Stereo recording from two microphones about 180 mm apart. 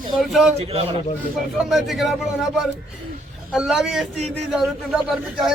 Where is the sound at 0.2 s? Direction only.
Centre (ahead or behind).